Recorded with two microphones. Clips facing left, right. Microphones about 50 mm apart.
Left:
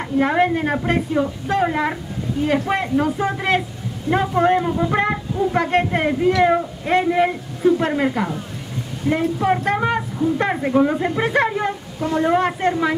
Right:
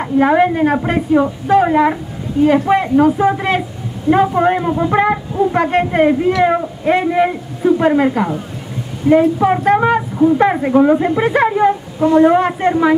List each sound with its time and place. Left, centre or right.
0.0 s a woman's voice: centre
9.4 s a woman's voice: centre
10.1 s speech: right
10.4 s a woman's voice: centre